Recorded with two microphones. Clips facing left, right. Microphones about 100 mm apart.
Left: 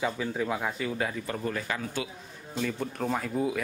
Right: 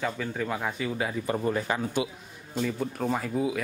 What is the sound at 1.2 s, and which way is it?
Speech, 20° right (ahead or behind).